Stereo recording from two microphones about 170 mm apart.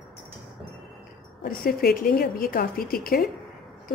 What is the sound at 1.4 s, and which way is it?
A woman's voice, 65° left (ahead or behind).